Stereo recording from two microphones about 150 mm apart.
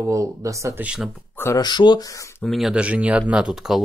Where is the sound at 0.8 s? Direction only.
10° right (ahead or behind).